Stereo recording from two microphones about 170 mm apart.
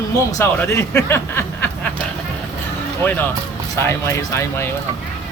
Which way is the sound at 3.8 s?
15° left (ahead or behind).